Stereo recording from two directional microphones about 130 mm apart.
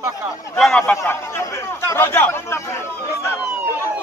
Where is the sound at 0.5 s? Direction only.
5° left (ahead or behind).